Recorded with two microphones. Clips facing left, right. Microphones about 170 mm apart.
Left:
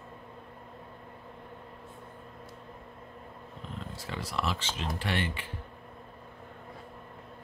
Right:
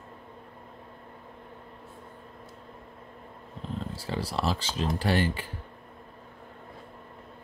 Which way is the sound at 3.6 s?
35° right (ahead or behind).